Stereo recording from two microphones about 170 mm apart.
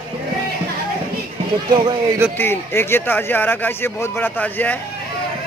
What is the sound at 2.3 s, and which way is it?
Speech, 15° left (ahead or behind).